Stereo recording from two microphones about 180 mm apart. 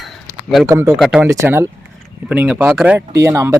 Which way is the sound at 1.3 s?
15° right (ahead or behind).